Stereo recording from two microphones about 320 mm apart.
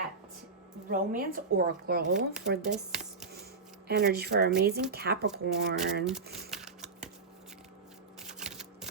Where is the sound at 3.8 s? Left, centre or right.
Right.